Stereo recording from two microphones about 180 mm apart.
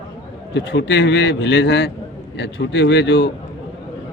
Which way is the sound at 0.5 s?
80° left.